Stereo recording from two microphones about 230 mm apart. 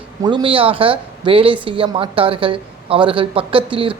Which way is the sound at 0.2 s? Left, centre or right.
Centre.